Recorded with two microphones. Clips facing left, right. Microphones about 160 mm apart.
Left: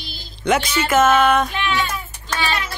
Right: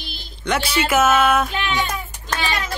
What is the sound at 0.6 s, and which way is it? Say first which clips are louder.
Speech: right 1 dB; 10° right (ahead or behind).